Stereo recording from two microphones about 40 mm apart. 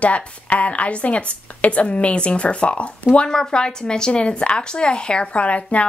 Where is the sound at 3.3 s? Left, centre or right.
Centre.